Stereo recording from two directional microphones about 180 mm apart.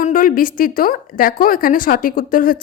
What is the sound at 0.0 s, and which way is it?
A woman's voice, 50° left (ahead or behind).